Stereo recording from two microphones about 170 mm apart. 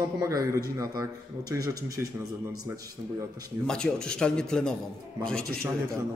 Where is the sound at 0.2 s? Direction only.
20° right (ahead or behind).